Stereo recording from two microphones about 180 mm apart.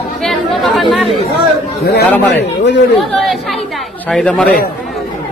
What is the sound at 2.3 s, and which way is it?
Speech, 75° left (ahead or behind).